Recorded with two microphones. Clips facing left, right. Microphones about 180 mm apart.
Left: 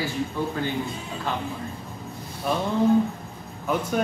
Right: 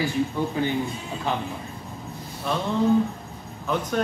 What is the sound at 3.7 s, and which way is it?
Speech, 10° left (ahead or behind).